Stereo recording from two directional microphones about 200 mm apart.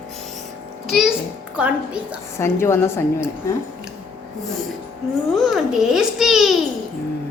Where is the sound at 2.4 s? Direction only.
15° left (ahead or behind).